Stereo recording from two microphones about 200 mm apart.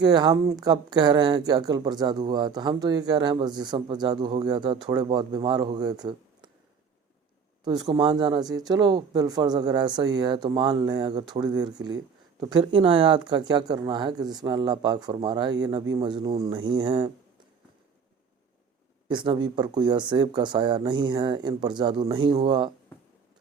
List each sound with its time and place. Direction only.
0.0 s speech: 20° right (ahead or behind)
7.6 s speech: 20° right (ahead or behind)
19.0 s speech: 25° right (ahead or behind)